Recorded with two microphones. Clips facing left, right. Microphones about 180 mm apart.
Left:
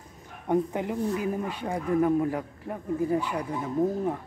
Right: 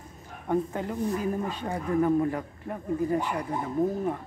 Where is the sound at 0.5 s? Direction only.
15° left (ahead or behind).